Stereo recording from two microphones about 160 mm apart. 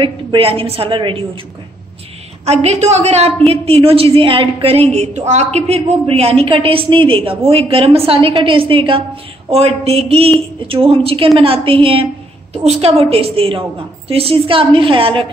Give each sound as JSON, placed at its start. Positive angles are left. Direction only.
{"t": 0.0, "sound": "a woman's voice", "side_deg": -35}
{"t": 2.4, "sound": "a woman's voice", "side_deg": -40}